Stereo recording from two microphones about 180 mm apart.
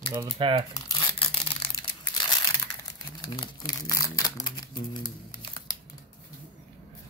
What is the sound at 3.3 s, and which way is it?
Speech, 20° left (ahead or behind).